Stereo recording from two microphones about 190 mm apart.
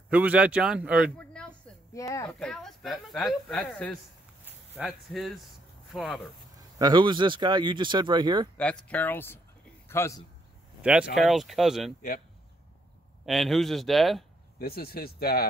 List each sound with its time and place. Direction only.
0.1 s speech: 5° right (ahead or behind)
1.1 s a sound: 5° left (ahead or behind)
2.0 s speech: 15° left (ahead or behind)
2.3 s speech: 5° left (ahead or behind)
6.8 s speech: 25° right (ahead or behind)
8.5 s a man's voice: 5° left (ahead or behind)
10.8 s speech: 5° right (ahead or behind)
13.2 s speech: centre (ahead or behind)
14.6 s speech: 55° left (ahead or behind)